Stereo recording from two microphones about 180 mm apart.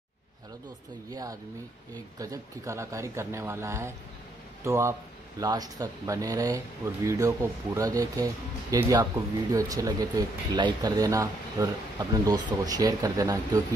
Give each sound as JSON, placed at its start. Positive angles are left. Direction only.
{"t": 2.1, "sound": "speech", "side_deg": -20}